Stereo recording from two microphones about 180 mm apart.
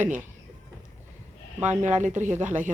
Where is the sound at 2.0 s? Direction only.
45° right (ahead or behind).